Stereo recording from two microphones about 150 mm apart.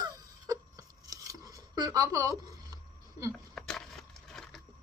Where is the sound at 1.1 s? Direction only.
25° right (ahead or behind).